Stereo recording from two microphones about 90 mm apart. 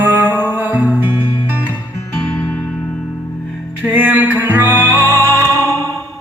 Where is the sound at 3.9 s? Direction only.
20° right (ahead or behind).